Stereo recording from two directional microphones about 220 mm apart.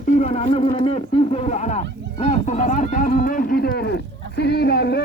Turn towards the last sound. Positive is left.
turn(degrees=45)  # may be behind; listen again after turning